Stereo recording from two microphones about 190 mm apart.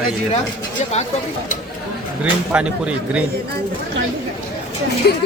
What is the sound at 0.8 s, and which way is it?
Speech, 40° left (ahead or behind).